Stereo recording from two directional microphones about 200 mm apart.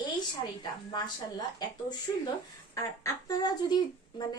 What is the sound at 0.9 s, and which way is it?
Speech, 20° left (ahead or behind).